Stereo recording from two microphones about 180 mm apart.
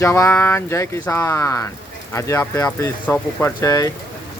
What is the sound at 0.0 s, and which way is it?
Speech, 15° left (ahead or behind).